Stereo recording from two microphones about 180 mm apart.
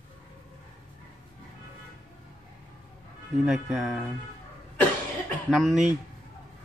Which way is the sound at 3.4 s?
Centre (ahead or behind).